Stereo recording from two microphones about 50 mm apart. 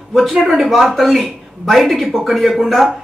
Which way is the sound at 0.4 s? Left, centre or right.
Centre.